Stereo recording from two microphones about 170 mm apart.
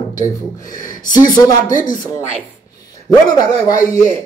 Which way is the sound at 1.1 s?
25° left (ahead or behind).